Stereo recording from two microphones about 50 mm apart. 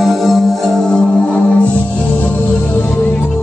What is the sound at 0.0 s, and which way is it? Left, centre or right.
Music, centre.